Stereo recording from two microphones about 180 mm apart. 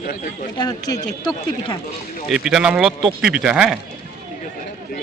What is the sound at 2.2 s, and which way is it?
Speech, 5° right (ahead or behind).